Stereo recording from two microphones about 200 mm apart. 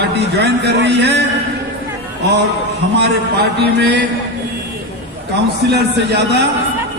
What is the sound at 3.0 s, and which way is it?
A man's voice, 55° right (ahead or behind).